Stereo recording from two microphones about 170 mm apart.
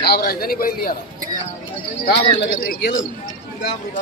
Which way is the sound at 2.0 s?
60° left (ahead or behind).